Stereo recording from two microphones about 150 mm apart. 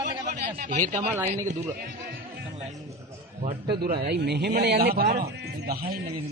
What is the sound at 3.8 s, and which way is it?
A man's voice, 90° right.